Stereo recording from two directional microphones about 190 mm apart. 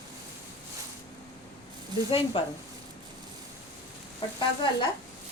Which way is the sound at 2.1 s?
30° left (ahead or behind).